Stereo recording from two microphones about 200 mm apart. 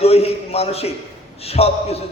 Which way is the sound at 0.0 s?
30° left (ahead or behind).